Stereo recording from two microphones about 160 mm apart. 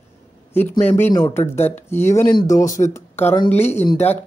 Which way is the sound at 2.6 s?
55° left (ahead or behind).